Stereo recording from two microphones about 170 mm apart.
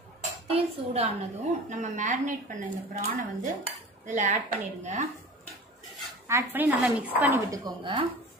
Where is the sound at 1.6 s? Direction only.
45° right (ahead or behind).